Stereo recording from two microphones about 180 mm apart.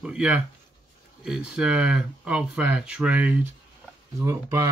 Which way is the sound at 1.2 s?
5° right (ahead or behind).